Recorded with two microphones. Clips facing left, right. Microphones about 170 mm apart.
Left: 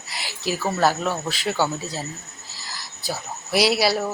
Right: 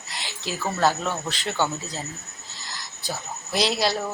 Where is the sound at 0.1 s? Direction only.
10° left (ahead or behind).